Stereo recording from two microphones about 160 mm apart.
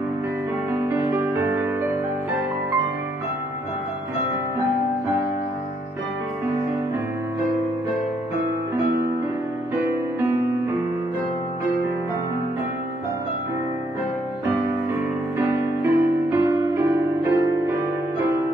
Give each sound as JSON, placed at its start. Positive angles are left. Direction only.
{"t": 0.8, "sound": "music", "side_deg": -15}
{"t": 15.3, "sound": "music", "side_deg": -15}